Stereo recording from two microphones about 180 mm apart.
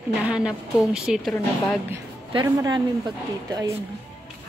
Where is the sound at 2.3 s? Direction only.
25° right (ahead or behind).